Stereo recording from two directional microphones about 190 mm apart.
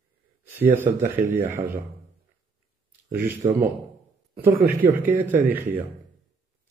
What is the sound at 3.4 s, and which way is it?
Speech, 35° right (ahead or behind).